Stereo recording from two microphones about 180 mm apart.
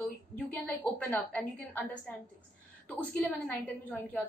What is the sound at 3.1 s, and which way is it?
Speech, 10° left (ahead or behind).